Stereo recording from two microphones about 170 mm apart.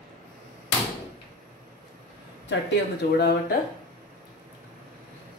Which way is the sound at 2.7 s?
70° left (ahead or behind).